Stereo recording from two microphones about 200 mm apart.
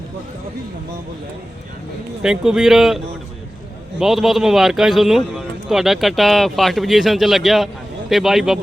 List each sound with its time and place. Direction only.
2.2 s a man's voice: 5° right (ahead or behind)
4.0 s a man's voice: centre (ahead or behind)